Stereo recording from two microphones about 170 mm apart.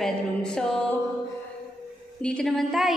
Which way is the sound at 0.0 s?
5° left (ahead or behind).